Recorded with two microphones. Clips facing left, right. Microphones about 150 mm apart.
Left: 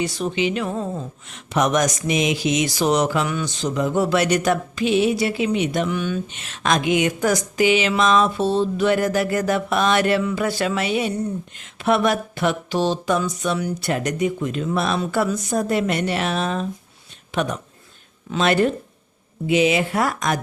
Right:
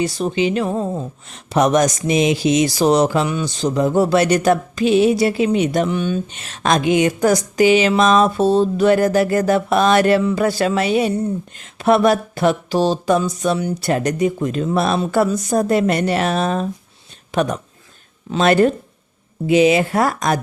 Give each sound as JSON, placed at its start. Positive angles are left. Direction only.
{"t": 0.0, "sound": "speech", "side_deg": -35}